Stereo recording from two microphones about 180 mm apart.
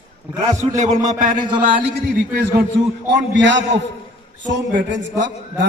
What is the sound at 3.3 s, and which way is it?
A man's voice, 90° right.